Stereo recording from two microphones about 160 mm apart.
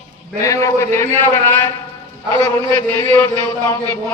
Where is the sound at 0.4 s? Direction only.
20° left (ahead or behind).